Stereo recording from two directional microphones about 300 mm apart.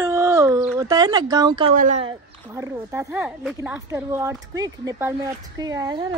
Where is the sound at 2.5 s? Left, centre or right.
Centre.